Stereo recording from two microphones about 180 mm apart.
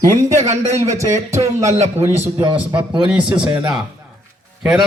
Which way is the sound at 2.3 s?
25° right (ahead or behind).